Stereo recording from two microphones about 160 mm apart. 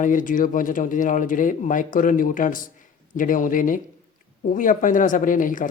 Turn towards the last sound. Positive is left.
turn(degrees=55)  # may be behind; listen again after turning